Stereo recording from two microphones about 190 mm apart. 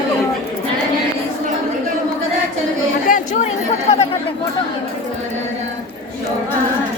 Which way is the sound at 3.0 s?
45° left (ahead or behind).